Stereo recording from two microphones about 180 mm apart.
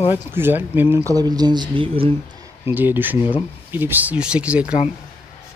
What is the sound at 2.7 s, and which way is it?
Speech, 10° right (ahead or behind).